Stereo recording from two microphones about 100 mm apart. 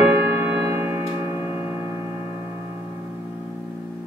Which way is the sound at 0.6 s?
25° right (ahead or behind).